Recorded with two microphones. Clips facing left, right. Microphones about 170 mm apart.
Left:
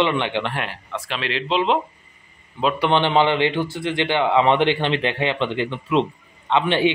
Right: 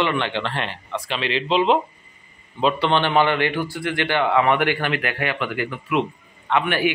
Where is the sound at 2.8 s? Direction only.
15° left (ahead or behind).